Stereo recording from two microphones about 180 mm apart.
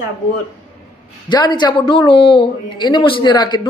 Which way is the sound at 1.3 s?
25° left (ahead or behind).